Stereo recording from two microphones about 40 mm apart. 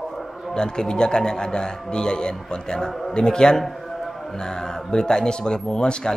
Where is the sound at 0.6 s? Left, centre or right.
Centre.